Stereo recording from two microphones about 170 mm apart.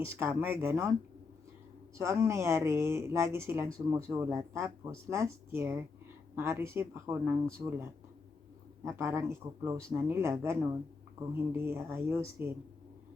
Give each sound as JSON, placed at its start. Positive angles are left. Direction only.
{"t": 0.2, "sound": "speech", "side_deg": -15}
{"t": 2.0, "sound": "speech", "side_deg": -15}
{"t": 8.8, "sound": "speech", "side_deg": -15}